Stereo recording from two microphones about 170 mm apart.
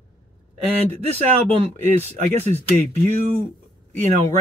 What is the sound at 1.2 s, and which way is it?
Speech, 40° right (ahead or behind).